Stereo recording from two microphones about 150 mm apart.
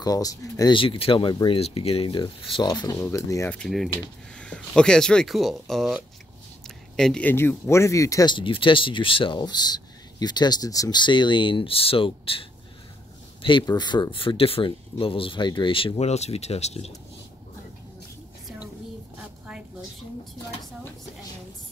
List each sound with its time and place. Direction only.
0.0 s speech: 25° left (ahead or behind)
0.7 s speech: 40° left (ahead or behind); by 3.4 s 20° left (ahead or behind)
3.4 s speech: 5° left (ahead or behind)
7.0 s speech: 5° left (ahead or behind); by 16.9 s 45° left (ahead or behind)